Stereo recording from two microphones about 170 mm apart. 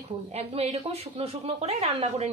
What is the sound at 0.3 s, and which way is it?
Speech, 40° right (ahead or behind).